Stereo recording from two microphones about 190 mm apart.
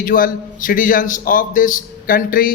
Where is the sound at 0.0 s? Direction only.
45° left (ahead or behind).